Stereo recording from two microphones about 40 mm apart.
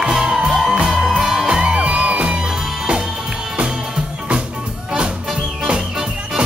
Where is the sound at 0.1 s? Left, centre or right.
Centre.